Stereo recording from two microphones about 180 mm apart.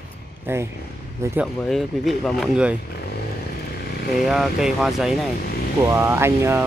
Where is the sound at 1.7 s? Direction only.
Centre (ahead or behind).